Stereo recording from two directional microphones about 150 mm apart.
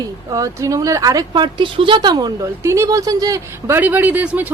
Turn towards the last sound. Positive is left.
turn(degrees=-10)  # may be behind; listen again after turning